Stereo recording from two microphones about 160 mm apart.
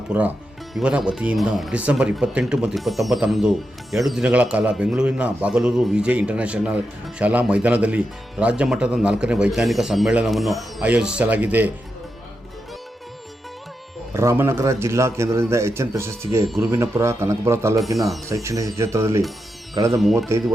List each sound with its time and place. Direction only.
0.1 s speech: 10° right (ahead or behind)
14.1 s speech: 15° right (ahead or behind)